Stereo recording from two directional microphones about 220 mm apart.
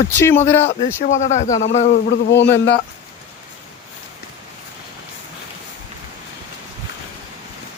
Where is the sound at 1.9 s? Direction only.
50° left (ahead or behind).